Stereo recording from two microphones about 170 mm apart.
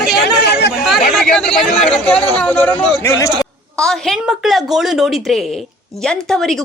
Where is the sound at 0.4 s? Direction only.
80° left.